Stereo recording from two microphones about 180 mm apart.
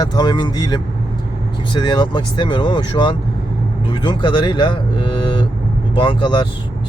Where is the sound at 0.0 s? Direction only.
25° left (ahead or behind).